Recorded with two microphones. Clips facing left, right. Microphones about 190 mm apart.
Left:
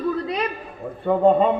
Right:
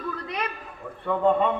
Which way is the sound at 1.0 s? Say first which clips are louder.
Left 5 dB; 35° left (ahead or behind).